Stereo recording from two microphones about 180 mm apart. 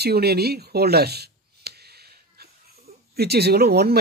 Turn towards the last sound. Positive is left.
turn(degrees=-60)  # may be behind; listen again after turning